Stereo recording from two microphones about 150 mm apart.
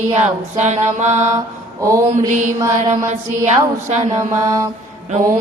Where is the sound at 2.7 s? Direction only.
55° right (ahead or behind).